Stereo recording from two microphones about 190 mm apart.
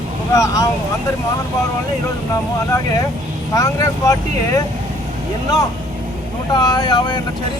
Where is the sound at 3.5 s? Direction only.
15° left (ahead or behind).